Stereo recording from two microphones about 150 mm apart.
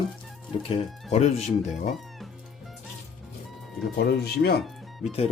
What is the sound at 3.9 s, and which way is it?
Speech, 90° left.